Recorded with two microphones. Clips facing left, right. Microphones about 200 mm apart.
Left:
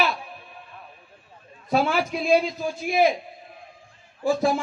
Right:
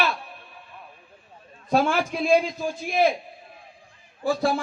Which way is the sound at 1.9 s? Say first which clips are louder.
Even; 10° left (ahead or behind).